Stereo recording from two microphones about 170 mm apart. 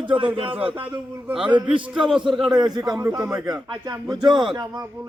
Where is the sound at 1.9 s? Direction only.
5° right (ahead or behind).